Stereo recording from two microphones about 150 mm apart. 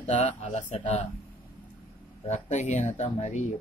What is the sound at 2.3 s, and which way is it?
Speech, 50° left (ahead or behind).